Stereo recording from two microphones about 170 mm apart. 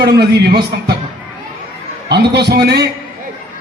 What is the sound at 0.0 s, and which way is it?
Speech, 75° right (ahead or behind).